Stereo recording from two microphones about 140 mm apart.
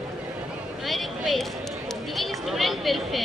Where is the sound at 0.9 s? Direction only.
Centre (ahead or behind).